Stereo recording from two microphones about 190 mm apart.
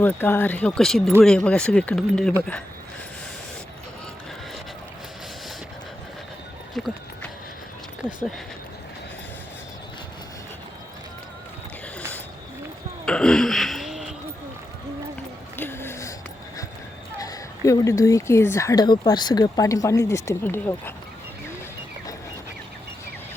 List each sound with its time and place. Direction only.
0.0 s speech: 10° left (ahead or behind)
6.7 s horse: centre (ahead or behind)
13.1 s a sound: 5° left (ahead or behind)
15.5 s music: 10° left (ahead or behind)
17.2 s speech: 15° left (ahead or behind)